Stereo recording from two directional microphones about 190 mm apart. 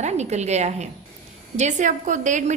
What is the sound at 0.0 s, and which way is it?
A woman's voice, 35° right (ahead or behind).